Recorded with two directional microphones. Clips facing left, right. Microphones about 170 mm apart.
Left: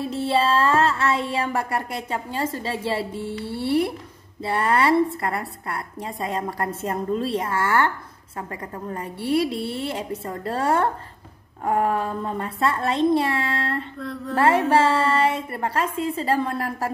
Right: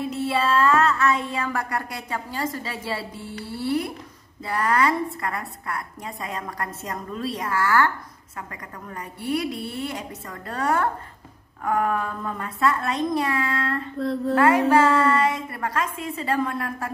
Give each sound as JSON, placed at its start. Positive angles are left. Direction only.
{"t": 0.0, "sound": "child singing", "side_deg": 30}
{"t": 13.9, "sound": "a sound", "side_deg": -35}
{"t": 14.3, "sound": "child singing", "side_deg": 30}